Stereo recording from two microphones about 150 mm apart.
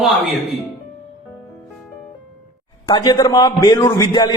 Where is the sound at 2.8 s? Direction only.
25° left (ahead or behind).